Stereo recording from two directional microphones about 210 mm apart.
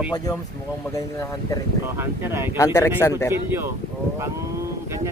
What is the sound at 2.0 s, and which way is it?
Speech, 10° right (ahead or behind).